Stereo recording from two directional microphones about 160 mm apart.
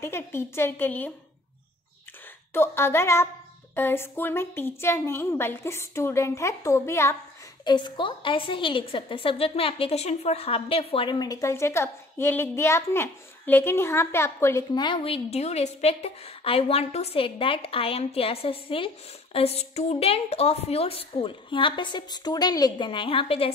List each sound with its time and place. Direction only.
0.0 s a woman's voice: 15° left (ahead or behind)
2.5 s a woman's voice: 15° left (ahead or behind)
7.6 s a woman's voice: 30° left (ahead or behind)
14.7 s a woman's voice: 30° left (ahead or behind)